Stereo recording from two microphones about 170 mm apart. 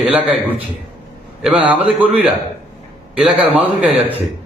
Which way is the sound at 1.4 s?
5° right (ahead or behind).